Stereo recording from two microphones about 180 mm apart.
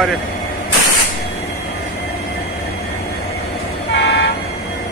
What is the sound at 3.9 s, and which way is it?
Toot, 75° left (ahead or behind).